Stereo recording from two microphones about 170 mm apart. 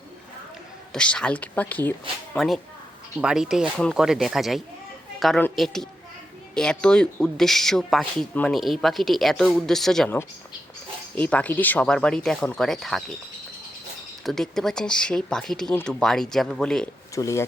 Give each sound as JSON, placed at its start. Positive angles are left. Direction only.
{"t": 0.9, "sound": "speech", "side_deg": 5}
{"t": 3.2, "sound": "speech", "side_deg": -5}
{"t": 14.3, "sound": "speech", "side_deg": 0}
{"t": 17.2, "sound": "speech", "side_deg": 20}